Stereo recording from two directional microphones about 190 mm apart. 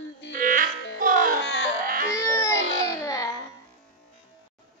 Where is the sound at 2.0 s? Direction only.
15° left (ahead or behind).